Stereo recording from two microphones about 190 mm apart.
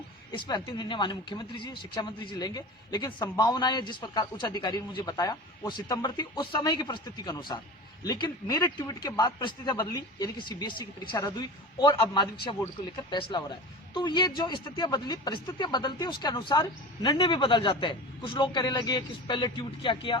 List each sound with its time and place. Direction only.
0.3 s speech: 25° left (ahead or behind)